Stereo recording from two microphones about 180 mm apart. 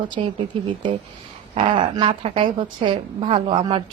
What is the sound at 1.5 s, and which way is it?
Speech, 30° right (ahead or behind).